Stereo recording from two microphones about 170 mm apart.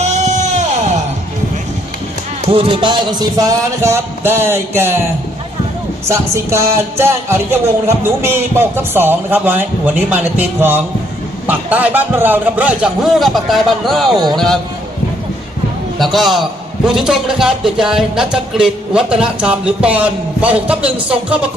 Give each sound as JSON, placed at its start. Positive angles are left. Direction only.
{"t": 0.0, "sound": "music", "side_deg": -40}
{"t": 2.5, "sound": "music", "side_deg": -35}
{"t": 6.1, "sound": "a man's voice", "side_deg": -15}
{"t": 16.0, "sound": "a man's voice", "side_deg": 0}